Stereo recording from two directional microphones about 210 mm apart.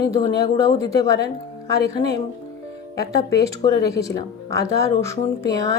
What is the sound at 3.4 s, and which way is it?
Speech, 15° left (ahead or behind).